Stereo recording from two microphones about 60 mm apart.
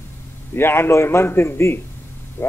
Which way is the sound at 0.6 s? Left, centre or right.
Left.